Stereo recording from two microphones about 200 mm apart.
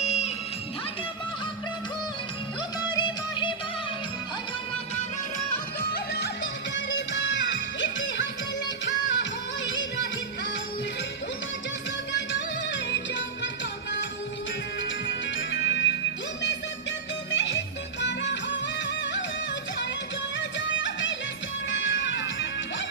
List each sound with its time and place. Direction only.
0.0 s music: 35° left (ahead or behind)
2.9 s music: 25° left (ahead or behind)
6.1 s music: 60° left (ahead or behind)
12.1 s music: 65° left (ahead or behind)
15.0 s music: 65° left (ahead or behind)
17.3 s music: 65° left (ahead or behind)
20.6 s music: 65° left (ahead or behind)